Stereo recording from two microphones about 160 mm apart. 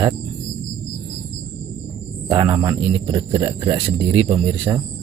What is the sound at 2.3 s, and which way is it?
Speech, 25° right (ahead or behind).